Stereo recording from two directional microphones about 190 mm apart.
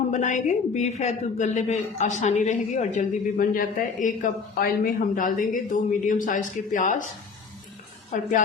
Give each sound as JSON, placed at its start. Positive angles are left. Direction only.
{"t": 0.1, "sound": "speech", "side_deg": 40}
{"t": 8.1, "sound": "speech", "side_deg": 45}